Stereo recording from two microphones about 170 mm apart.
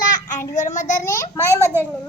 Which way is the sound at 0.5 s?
45° left (ahead or behind).